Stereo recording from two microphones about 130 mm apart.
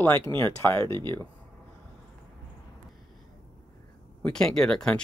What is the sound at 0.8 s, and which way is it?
Speech, 35° right (ahead or behind).